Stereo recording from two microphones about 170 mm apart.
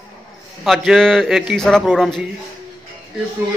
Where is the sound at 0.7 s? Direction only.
Centre (ahead or behind).